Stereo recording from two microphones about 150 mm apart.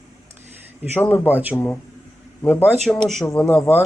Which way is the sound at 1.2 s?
10° right (ahead or behind).